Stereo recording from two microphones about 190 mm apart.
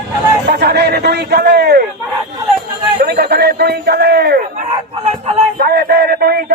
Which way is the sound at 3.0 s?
55° right (ahead or behind).